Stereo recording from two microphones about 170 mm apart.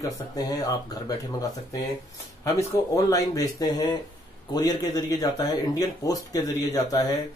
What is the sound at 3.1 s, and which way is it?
Speech, 20° left (ahead or behind).